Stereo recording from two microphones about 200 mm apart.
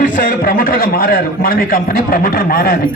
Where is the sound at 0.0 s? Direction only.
40° left (ahead or behind).